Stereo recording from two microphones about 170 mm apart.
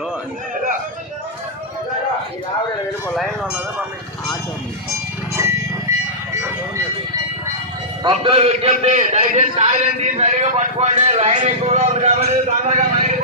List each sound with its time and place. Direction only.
3.2 s speech: 5° right (ahead or behind)
5.3 s music: 15° right (ahead or behind)
8.0 s a man's voice: 30° right (ahead or behind); by 13.1 s 45° right (ahead or behind)